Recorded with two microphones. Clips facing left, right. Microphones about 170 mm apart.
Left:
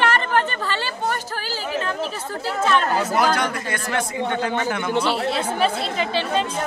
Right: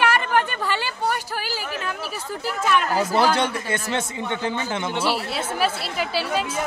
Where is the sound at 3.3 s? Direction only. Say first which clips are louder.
Right 1 dB; 25° right (ahead or behind).